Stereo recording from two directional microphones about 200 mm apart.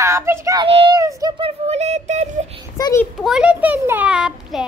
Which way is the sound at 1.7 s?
35° right (ahead or behind).